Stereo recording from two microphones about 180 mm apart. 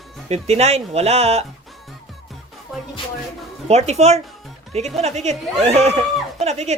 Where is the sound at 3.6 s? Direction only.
35° right (ahead or behind).